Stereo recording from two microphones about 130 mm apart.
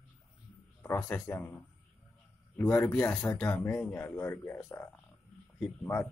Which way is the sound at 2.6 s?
20° left (ahead or behind).